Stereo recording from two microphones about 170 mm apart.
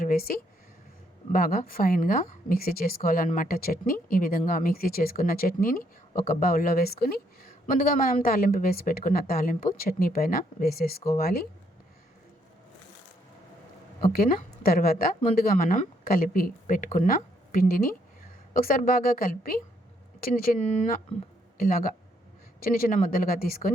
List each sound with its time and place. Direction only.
0.0 s speech: 60° left (ahead or behind)
14.1 s speech: 60° left (ahead or behind)
15.5 s speech: 50° left (ahead or behind)